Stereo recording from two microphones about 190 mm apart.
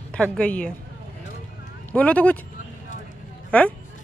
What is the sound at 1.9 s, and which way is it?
Speech, 5° left (ahead or behind).